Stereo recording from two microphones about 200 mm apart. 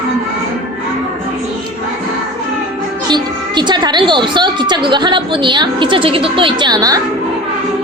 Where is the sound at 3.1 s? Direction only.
20° right (ahead or behind).